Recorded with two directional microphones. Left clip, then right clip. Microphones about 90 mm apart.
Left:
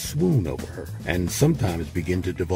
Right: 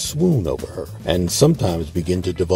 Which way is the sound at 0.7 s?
10° right (ahead or behind).